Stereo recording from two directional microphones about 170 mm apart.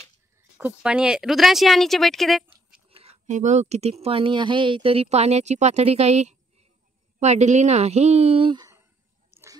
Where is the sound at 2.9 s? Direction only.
35° right (ahead or behind).